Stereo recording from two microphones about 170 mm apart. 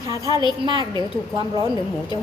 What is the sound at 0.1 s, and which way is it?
Speech, 20° right (ahead or behind).